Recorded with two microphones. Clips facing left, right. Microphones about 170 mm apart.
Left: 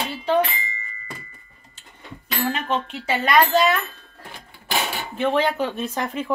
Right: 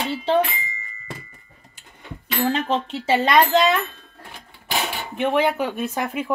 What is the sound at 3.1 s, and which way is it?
Speech, 20° right (ahead or behind).